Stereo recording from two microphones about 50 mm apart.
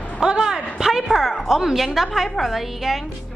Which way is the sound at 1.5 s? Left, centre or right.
Centre.